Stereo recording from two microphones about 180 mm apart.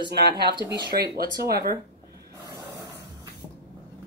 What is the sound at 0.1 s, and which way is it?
Speech, 65° right (ahead or behind).